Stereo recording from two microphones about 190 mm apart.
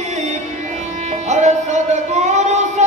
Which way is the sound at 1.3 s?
35° right (ahead or behind).